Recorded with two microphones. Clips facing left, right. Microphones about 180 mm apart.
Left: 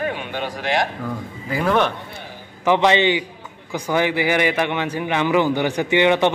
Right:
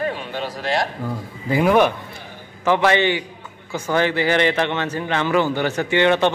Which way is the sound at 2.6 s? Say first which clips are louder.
Left 1 dB; 20° left (ahead or behind).